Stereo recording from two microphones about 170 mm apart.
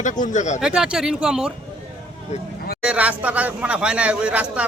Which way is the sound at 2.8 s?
10° right (ahead or behind).